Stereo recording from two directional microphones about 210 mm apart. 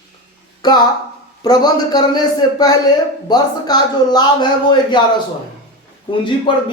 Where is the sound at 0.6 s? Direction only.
20° left (ahead or behind).